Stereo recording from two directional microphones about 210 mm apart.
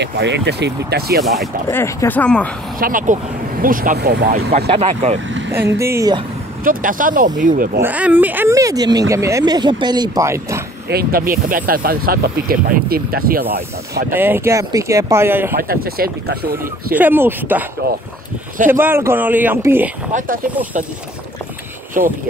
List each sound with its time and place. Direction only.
0.0 s speech: 55° right (ahead or behind)
1.2 s speech: centre (ahead or behind)
1.7 s speech: 10° left (ahead or behind)
2.8 s speech: 40° right (ahead or behind)
4.6 s speech: 30° right (ahead or behind)
5.8 s speech: 15° right (ahead or behind)
6.6 s speech: 40° right (ahead or behind)
7.8 s speech: 10° right (ahead or behind)
10.9 s speech: 45° right (ahead or behind)
14.1 s speech: 10° right (ahead or behind)
15.5 s speech: 45° right (ahead or behind)
16.6 s speech: 10° right (ahead or behind)
18.7 s speech: 10° right (ahead or behind)
20.1 s speech: 35° right (ahead or behind)